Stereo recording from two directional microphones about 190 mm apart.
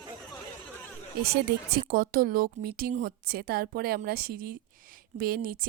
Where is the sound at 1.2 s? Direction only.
55° right (ahead or behind).